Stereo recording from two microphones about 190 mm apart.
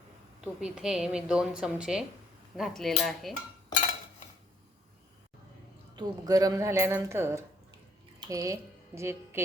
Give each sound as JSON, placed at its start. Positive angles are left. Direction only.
{"t": 0.4, "sound": "a woman's voice", "side_deg": -5}
{"t": 6.0, "sound": "a woman's voice", "side_deg": -20}